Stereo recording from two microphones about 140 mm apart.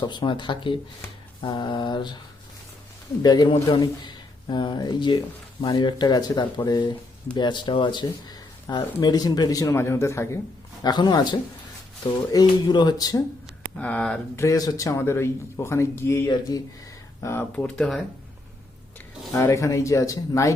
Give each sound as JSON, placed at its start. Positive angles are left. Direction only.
{"t": 0.0, "sound": "speech", "side_deg": 35}
{"t": 3.2, "sound": "speech", "side_deg": 30}
{"t": 13.7, "sound": "speech", "side_deg": 10}
{"t": 14.3, "sound": "speech", "side_deg": 25}
{"t": 17.5, "sound": "speech", "side_deg": 5}
{"t": 19.3, "sound": "speech", "side_deg": 20}